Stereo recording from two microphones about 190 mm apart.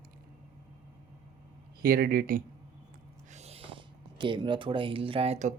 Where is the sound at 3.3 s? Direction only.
35° right (ahead or behind).